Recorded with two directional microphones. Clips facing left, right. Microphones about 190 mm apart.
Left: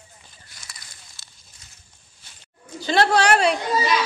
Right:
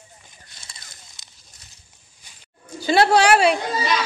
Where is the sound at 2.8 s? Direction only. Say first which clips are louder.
Right 3 dB; 10° right (ahead or behind).